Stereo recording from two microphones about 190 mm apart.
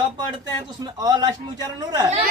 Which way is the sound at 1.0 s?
20° right (ahead or behind).